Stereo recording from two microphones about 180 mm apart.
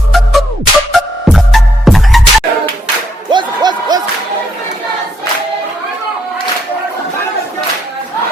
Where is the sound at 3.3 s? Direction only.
25° right (ahead or behind).